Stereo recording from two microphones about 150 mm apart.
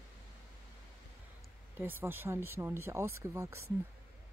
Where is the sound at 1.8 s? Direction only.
15° right (ahead or behind).